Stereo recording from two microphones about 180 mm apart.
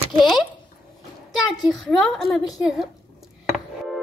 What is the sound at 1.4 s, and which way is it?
A child's voice, centre (ahead or behind).